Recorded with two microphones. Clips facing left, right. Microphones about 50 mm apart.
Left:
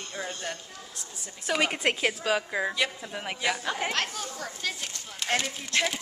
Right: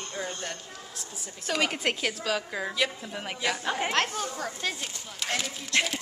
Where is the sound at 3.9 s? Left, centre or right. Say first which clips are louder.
Right 3 dB; right.